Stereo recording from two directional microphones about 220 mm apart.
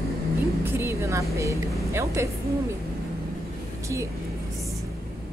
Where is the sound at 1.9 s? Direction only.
15° right (ahead or behind).